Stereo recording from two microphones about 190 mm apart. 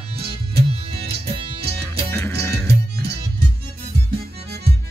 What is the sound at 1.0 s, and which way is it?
Music, 30° right (ahead or behind).